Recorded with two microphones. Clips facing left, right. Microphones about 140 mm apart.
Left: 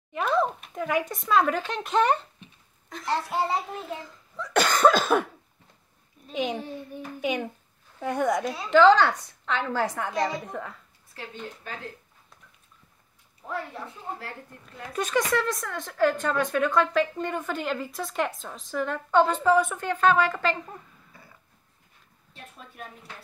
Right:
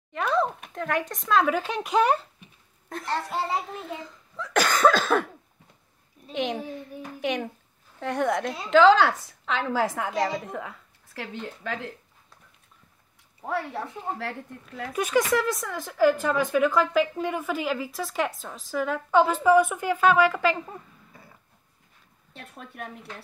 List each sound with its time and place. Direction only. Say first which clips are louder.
0.1 s a sound: even; 5° left (ahead or behind)
0.7 s speech: left 1 dB; 5° left (ahead or behind)
3.3 s speech: left 1 dB; centre (ahead or behind)
6.2 s speech: even; centre (ahead or behind)
11.1 s speech: right 3 dB; 90° right
13.5 s speech: right 4 dB; 85° right
14.9 s speech: right 2 dB; 10° right (ahead or behind)
22.3 s speech: right 3 dB; 60° right (ahead or behind)